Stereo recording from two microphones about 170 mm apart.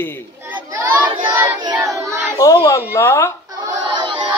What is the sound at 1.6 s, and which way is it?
Child singing, 20° right (ahead or behind).